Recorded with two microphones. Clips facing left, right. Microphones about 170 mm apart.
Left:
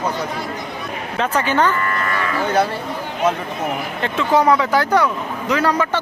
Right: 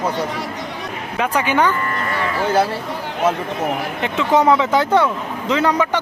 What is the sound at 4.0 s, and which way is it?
Speech, 20° right (ahead or behind).